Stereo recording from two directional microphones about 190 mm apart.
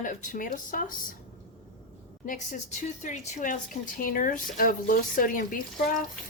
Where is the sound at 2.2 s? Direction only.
45° left (ahead or behind).